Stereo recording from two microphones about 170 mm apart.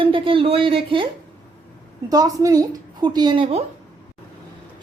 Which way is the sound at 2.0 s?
20° right (ahead or behind).